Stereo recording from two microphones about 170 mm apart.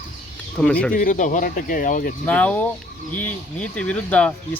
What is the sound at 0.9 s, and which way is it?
Speech, 50° left (ahead or behind).